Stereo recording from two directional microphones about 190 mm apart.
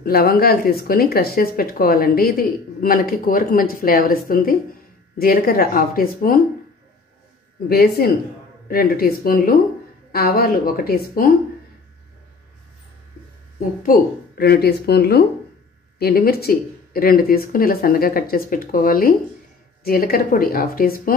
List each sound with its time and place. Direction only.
0.0 s speech: 55° left (ahead or behind)
7.6 s speech: 55° left (ahead or behind)
13.8 s speech: 55° left (ahead or behind)